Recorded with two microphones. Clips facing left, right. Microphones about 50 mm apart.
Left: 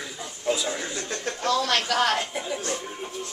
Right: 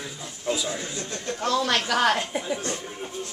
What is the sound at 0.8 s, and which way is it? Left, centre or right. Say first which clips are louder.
Speech: left 2 dB; left.